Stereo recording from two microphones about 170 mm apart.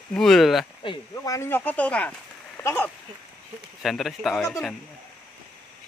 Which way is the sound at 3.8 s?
Centre (ahead or behind).